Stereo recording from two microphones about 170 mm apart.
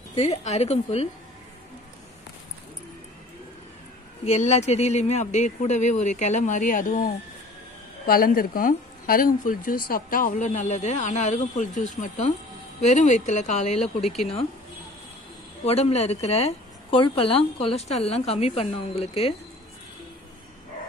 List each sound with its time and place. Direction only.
0.1 s a woman's voice: 40° left (ahead or behind)
4.3 s speech: 40° left (ahead or behind)
15.6 s a woman's voice: 40° left (ahead or behind)